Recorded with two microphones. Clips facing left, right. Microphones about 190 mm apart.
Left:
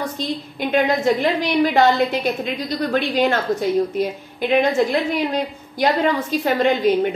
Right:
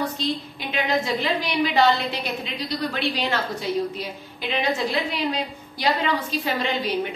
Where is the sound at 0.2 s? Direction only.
50° left (ahead or behind).